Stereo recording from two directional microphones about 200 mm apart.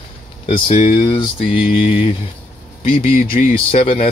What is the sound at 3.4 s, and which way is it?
Speech, 40° left (ahead or behind).